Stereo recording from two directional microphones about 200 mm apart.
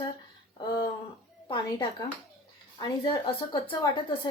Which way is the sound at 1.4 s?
25° left (ahead or behind).